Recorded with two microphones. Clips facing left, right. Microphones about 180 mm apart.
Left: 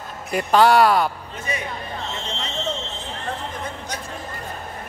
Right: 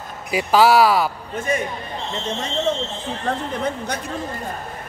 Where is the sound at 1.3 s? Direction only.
50° right (ahead or behind).